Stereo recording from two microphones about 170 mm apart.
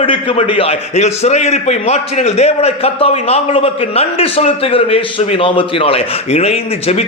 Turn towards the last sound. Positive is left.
turn(degrees=35)  # may be behind; listen again after turning